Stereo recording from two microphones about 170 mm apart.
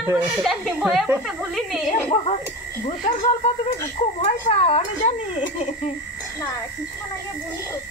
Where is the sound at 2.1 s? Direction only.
35° left (ahead or behind).